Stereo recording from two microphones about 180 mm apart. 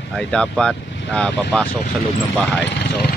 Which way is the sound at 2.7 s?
70° left (ahead or behind).